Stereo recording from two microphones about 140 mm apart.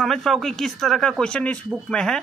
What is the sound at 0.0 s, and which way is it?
Speech, centre (ahead or behind).